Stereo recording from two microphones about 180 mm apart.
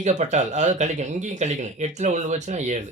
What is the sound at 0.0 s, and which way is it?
Speech, 40° right (ahead or behind).